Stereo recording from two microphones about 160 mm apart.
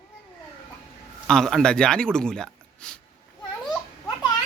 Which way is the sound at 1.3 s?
5° left (ahead or behind).